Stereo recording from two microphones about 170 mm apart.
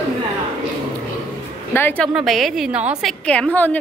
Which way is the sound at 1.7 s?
10° left (ahead or behind).